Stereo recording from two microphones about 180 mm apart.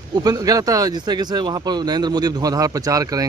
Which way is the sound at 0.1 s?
20° right (ahead or behind).